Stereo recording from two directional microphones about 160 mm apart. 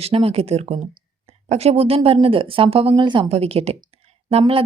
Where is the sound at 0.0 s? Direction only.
40° right (ahead or behind).